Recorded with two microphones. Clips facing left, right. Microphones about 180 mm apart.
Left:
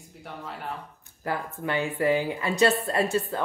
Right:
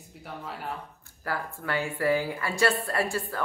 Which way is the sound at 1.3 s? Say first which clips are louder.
Left 2 dB; 20° left (ahead or behind).